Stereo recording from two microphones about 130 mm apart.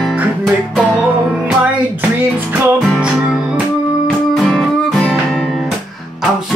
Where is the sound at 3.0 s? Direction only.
5° right (ahead or behind).